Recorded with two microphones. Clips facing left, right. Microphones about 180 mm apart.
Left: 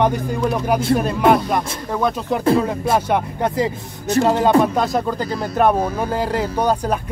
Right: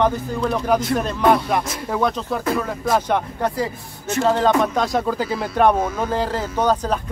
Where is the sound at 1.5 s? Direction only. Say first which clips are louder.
Even; centre (ahead or behind).